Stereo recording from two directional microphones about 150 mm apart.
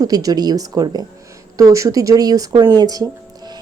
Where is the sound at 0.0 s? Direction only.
25° right (ahead or behind).